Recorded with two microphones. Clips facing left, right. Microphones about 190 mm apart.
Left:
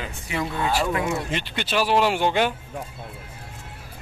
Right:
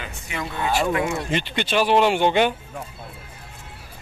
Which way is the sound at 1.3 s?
5° left (ahead or behind).